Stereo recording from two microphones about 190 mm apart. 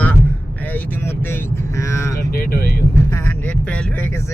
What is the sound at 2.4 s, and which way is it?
Speech, 50° left (ahead or behind).